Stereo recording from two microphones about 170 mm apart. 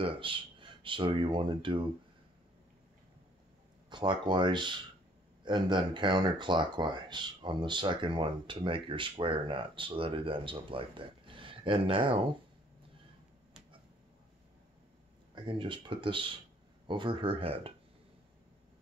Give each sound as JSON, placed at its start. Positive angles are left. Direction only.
{"t": 0.0, "sound": "speech", "side_deg": -30}
{"t": 3.9, "sound": "speech", "side_deg": -25}
{"t": 15.3, "sound": "speech", "side_deg": -30}